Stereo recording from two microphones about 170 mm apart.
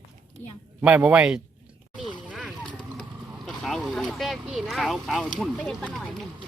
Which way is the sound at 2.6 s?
5° left (ahead or behind).